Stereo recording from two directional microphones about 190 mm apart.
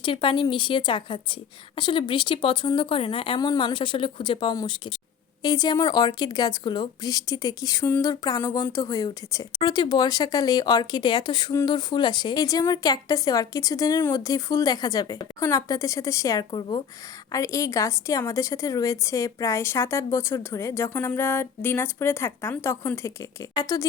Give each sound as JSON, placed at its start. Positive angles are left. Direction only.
{"t": 0.0, "sound": "a woman's voice", "side_deg": 25}